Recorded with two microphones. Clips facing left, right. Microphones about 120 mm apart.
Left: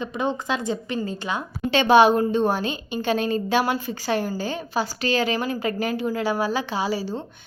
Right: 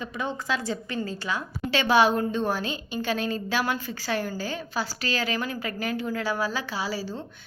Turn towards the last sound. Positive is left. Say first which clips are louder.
# left 5 dB
turn(degrees=15)  # may be behind; listen again after turning